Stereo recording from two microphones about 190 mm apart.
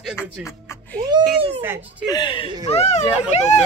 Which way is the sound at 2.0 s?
25° left (ahead or behind).